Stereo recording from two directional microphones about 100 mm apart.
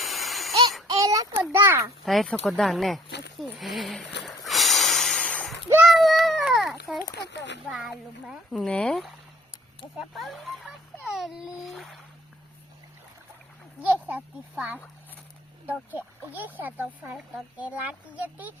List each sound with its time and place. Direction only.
0.0 s a sound: centre (ahead or behind)
0.9 s child singing: 35° right (ahead or behind)
1.4 s a child's voice: 20° right (ahead or behind)
2.0 s speech: centre (ahead or behind)
4.4 s snort: centre (ahead or behind)
5.8 s a sound: centre (ahead or behind)
7.7 s speech: 5° right (ahead or behind)
8.7 s speech: 10° left (ahead or behind)
10.2 s a child's voice: centre (ahead or behind)
13.8 s speech: 15° right (ahead or behind)